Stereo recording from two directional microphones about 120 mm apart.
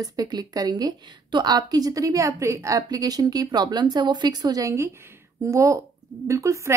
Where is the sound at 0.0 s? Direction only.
30° right (ahead or behind).